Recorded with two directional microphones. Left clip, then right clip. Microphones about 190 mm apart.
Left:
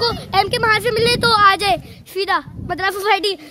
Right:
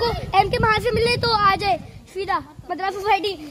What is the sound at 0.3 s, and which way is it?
A woman's voice, 25° left (ahead or behind).